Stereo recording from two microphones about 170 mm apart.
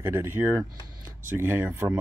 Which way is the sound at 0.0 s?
15° right (ahead or behind).